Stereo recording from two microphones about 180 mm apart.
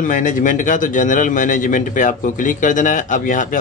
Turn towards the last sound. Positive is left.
turn(degrees=45)  # may be behind; listen again after turning